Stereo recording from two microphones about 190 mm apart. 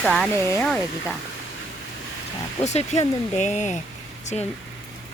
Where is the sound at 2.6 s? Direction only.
35° left (ahead or behind).